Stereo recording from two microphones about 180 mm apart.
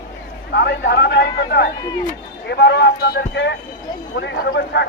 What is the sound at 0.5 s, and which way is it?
Speech, 70° left (ahead or behind).